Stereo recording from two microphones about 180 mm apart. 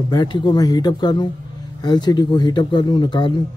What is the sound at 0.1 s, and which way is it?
Speech, 25° left (ahead or behind).